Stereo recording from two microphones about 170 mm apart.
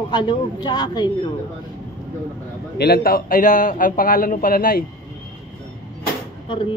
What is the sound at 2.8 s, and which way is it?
A man's voice, 65° left (ahead or behind).